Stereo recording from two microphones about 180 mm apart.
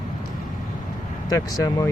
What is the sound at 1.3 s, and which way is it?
Speech, 20° left (ahead or behind).